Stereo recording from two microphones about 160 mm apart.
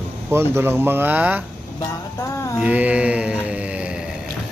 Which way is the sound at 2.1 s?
20° left (ahead or behind).